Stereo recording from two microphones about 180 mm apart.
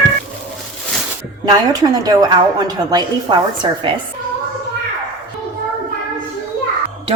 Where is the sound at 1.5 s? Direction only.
20° right (ahead or behind).